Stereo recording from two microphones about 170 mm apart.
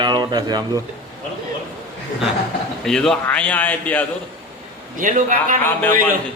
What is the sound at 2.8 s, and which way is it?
A man's voice, centre (ahead or behind).